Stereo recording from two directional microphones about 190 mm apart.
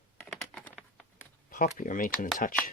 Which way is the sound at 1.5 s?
45° left (ahead or behind).